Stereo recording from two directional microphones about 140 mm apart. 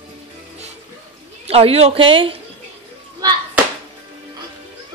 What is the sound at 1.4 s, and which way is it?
A woman's voice, 45° right (ahead or behind).